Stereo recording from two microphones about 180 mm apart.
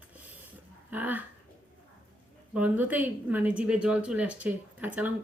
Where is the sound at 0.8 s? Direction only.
10° right (ahead or behind).